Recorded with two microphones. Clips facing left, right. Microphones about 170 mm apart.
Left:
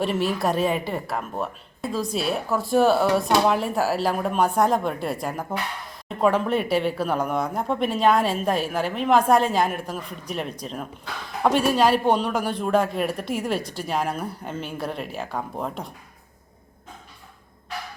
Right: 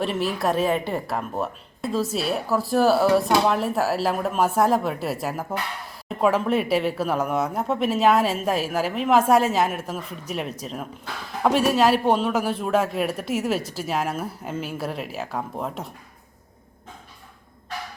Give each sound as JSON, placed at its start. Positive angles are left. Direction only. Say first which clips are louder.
{"t": 0.0, "sound": "a woman's voice", "louder": "left 1 dB", "side_deg": 0}